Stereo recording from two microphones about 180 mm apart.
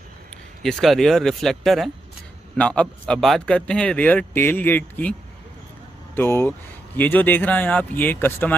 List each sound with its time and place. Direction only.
0.6 s a man's voice: centre (ahead or behind)
6.1 s a man's voice: 10° left (ahead or behind)